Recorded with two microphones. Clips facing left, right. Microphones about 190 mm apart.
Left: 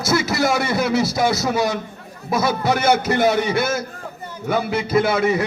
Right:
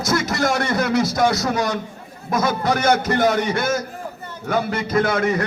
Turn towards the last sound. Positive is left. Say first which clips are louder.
# left 1 dB
turn(degrees=5)  # may be behind; listen again after turning